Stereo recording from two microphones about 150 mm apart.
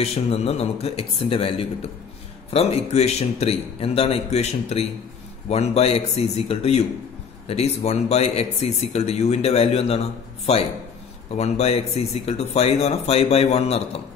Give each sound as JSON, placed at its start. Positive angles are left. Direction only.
{"t": 0.0, "sound": "speech", "side_deg": 40}